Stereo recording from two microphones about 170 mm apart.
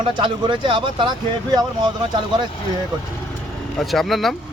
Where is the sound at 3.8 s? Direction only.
Centre (ahead or behind).